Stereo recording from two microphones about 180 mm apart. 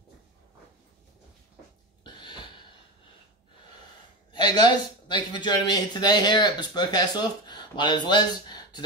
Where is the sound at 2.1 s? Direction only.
25° left (ahead or behind).